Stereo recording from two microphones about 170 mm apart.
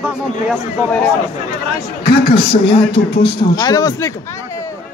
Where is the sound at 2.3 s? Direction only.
30° left (ahead or behind).